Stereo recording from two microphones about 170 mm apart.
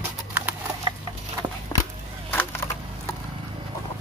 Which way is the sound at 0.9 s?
30° right (ahead or behind).